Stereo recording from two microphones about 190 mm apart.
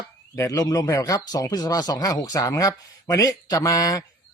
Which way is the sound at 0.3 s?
15° left (ahead or behind).